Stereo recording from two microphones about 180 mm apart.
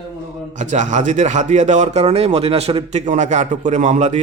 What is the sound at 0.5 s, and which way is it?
A man's voice, 45° right (ahead or behind).